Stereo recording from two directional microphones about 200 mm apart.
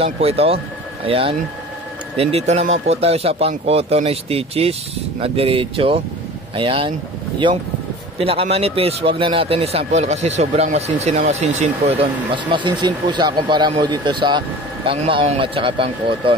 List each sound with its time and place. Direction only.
0.0 s speech: 30° right (ahead or behind)
2.3 s speech: 35° right (ahead or behind)
8.2 s speech: 30° right (ahead or behind)
12.4 s speech: 25° right (ahead or behind)